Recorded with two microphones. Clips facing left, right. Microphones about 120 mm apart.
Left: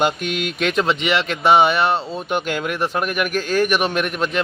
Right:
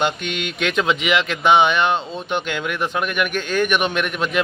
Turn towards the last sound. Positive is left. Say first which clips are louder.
# left 1 dB
turn(degrees=0)  # may be behind; listen again after turning